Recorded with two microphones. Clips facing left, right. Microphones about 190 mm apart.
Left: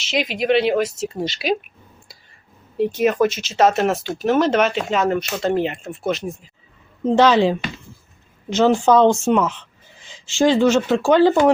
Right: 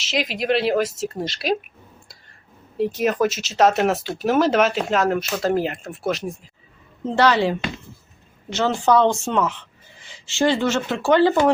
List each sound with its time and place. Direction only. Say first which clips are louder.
0.0 s speech: left 2 dB; centre (ahead or behind)
2.7 s speech: left 3 dB; centre (ahead or behind)
7.2 s speech: left 3 dB; 15° left (ahead or behind)